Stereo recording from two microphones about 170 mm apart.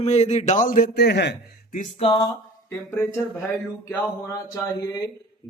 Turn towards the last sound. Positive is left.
turn(degrees=20)  # may be behind; listen again after turning